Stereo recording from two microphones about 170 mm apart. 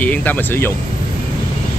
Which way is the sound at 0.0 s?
10° left (ahead or behind).